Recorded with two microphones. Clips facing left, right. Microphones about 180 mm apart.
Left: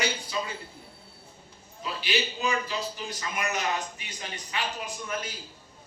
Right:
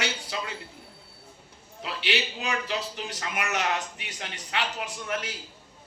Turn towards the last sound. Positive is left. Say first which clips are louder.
# right 2 dB
turn(degrees=-75)  # may be behind; listen again after turning